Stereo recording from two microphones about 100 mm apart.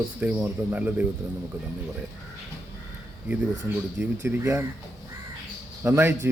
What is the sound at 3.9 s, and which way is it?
Speech, 20° right (ahead or behind).